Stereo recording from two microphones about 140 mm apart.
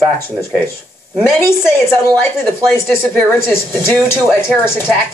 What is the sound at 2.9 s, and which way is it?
A woman's voice, 15° left (ahead or behind).